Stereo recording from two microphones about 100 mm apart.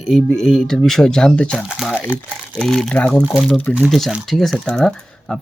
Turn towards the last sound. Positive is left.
turn(degrees=5)  # may be behind; listen again after turning